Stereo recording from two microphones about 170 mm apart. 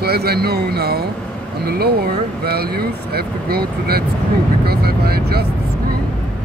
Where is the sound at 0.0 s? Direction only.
65° right (ahead or behind).